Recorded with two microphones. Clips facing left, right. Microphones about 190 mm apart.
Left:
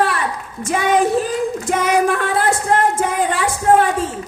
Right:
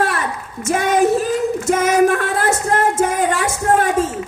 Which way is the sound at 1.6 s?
45° right (ahead or behind).